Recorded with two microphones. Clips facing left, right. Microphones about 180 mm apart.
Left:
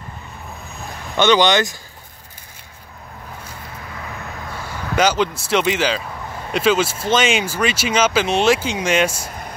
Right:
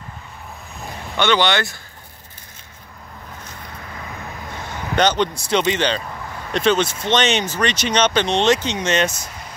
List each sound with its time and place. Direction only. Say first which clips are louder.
1.1 s speech: left 3 dB; 15° left (ahead or behind)
4.9 s speech: even; 5° left (ahead or behind)